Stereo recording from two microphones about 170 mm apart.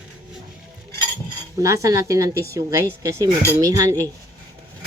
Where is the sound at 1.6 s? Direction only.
20° right (ahead or behind).